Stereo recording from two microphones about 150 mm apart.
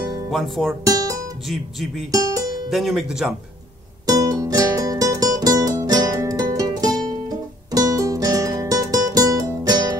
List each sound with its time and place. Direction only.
0.3 s speech: 5° left (ahead or behind)
0.8 s music: 25° right (ahead or behind)
1.5 s speech: centre (ahead or behind)
2.0 s music: 25° right (ahead or behind)
2.7 s speech: centre (ahead or behind)
4.0 s music: 25° right (ahead or behind)